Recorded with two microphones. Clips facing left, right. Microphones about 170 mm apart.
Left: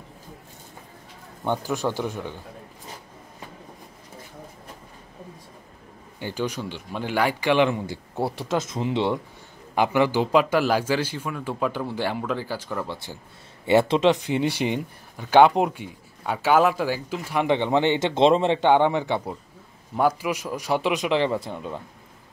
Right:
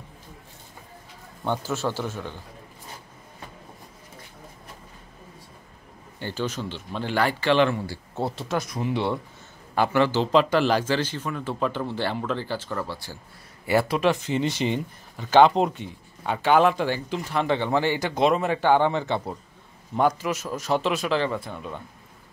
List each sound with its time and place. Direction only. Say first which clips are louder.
1.4 s speech: left 2 dB; 15° left (ahead or behind)
6.1 s speech: left 1 dB; 15° left (ahead or behind)